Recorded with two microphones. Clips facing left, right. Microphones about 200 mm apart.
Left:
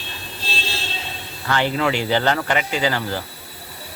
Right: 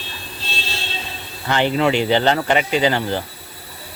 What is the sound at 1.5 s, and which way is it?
Speech, 20° right (ahead or behind).